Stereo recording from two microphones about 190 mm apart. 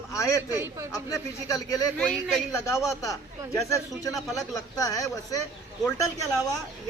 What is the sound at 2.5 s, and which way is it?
Speech, 15° left (ahead or behind).